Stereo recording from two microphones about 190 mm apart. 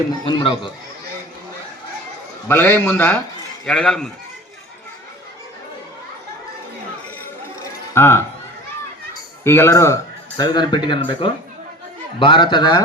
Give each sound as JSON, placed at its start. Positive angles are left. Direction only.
{"t": 0.3, "sound": "a man's voice", "side_deg": 25}
{"t": 2.5, "sound": "a man's voice", "side_deg": 10}
{"t": 7.9, "sound": "a man's voice", "side_deg": 15}
{"t": 9.4, "sound": "a man's voice", "side_deg": 10}